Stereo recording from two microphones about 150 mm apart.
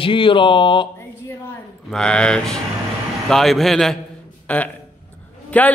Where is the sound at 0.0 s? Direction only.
35° left (ahead or behind).